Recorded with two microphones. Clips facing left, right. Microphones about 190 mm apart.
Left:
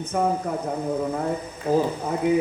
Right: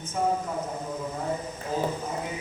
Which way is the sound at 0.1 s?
60° left (ahead or behind).